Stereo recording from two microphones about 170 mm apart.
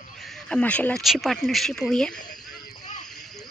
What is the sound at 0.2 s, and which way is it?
Speech, 5° left (ahead or behind).